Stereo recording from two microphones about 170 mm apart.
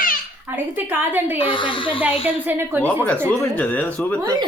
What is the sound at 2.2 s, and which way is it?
Speech, 10° right (ahead or behind).